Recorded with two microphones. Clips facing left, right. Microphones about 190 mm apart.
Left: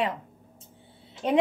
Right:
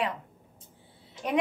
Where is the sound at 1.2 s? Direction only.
30° left (ahead or behind).